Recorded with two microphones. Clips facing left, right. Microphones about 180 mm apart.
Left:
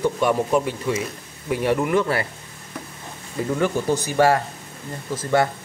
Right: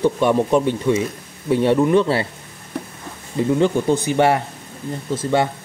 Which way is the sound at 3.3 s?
20° right (ahead or behind).